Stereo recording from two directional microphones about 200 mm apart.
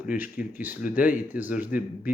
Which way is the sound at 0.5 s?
10° right (ahead or behind).